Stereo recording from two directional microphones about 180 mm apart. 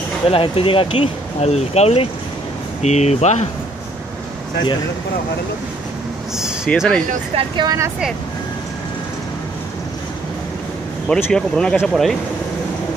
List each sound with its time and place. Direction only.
0.3 s speech: 30° left (ahead or behind)
6.3 s speech: 5° right (ahead or behind)
7.3 s speech: 25° right (ahead or behind)
11.1 s speech: 5° left (ahead or behind)